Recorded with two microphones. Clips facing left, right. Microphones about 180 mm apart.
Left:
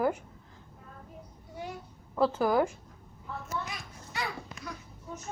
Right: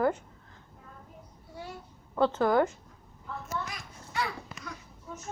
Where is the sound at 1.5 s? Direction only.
15° left (ahead or behind).